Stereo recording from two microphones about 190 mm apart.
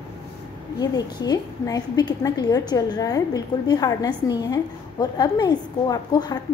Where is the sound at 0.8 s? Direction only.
20° left (ahead or behind).